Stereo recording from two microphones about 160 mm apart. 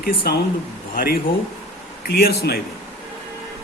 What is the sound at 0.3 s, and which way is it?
Speech, 80° left.